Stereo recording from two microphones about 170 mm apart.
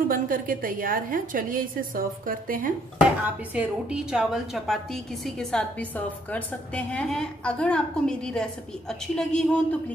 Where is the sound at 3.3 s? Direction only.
10° right (ahead or behind).